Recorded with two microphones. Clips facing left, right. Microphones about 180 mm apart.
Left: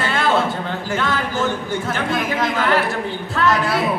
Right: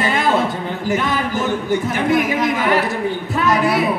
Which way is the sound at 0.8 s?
15° right (ahead or behind).